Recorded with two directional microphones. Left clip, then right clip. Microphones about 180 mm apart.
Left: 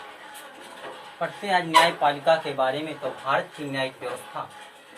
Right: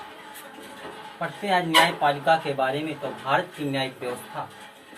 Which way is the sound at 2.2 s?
15° left (ahead or behind).